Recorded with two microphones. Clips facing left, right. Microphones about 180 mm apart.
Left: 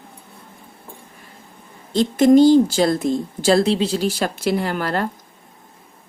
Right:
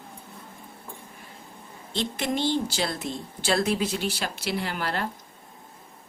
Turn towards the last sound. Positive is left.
turn(degrees=45)  # may be behind; listen again after turning